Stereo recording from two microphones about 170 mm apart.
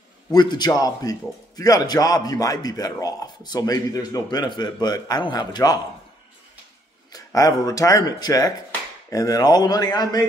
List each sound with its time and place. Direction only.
0.3 s speech: 25° left (ahead or behind)
7.1 s speech: 20° left (ahead or behind)